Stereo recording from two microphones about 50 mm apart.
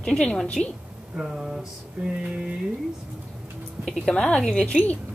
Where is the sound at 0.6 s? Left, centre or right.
Centre.